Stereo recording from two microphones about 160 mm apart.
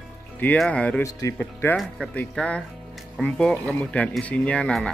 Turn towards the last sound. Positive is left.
turn(degrees=5)  # may be behind; listen again after turning